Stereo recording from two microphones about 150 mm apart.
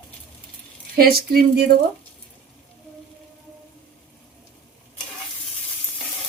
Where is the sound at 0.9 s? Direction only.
90° right.